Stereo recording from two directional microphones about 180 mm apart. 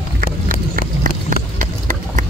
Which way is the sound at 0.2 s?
50° right (ahead or behind).